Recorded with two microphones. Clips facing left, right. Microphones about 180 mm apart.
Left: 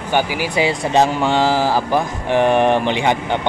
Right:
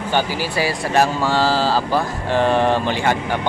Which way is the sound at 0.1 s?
15° left (ahead or behind).